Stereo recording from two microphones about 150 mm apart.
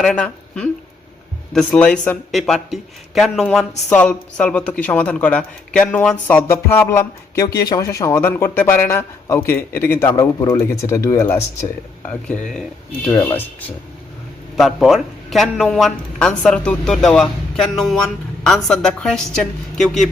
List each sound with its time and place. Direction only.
0.0 s a man's voice: 5° left (ahead or behind)
13.2 s speech: 15° left (ahead or behind)
14.5 s a man's voice: centre (ahead or behind)